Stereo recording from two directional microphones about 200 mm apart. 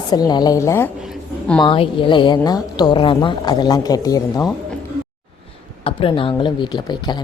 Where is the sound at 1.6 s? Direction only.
25° left (ahead or behind).